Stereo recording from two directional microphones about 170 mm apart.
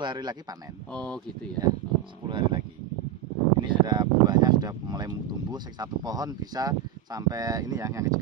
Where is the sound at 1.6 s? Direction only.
25° right (ahead or behind).